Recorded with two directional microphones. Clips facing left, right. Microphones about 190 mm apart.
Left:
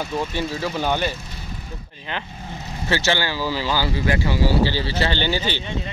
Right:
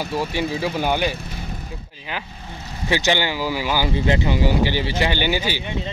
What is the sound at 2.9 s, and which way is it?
Speech, 15° right (ahead or behind).